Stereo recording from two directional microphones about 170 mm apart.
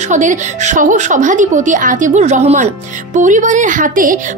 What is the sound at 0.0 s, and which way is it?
A woman's voice, 45° right (ahead or behind).